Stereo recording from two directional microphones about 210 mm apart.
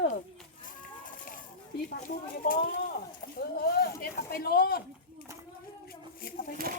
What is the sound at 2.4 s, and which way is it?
Speech, 40° left (ahead or behind).